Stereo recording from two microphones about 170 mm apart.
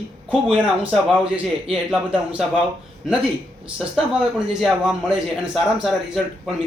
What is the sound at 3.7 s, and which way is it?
A man's voice, 5° right (ahead or behind).